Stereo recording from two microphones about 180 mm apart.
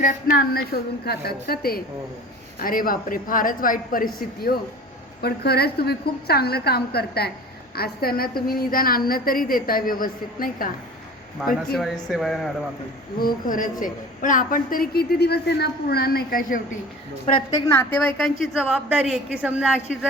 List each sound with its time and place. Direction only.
0.0 s a woman's voice: 45° left (ahead or behind)
11.8 s speech: centre (ahead or behind)
13.1 s a woman's voice: 50° left (ahead or behind)
17.5 s a woman's voice: 15° left (ahead or behind)
18.2 s speech: centre (ahead or behind)